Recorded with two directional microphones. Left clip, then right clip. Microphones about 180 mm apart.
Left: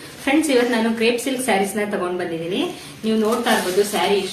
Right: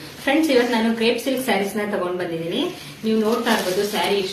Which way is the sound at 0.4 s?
25° left (ahead or behind).